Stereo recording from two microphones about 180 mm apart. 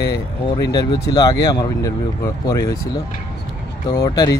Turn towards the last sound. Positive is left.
turn(degrees=20)  # may be behind; listen again after turning